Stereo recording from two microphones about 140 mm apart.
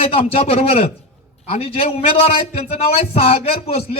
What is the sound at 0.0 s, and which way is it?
A man's voice, 45° left (ahead or behind).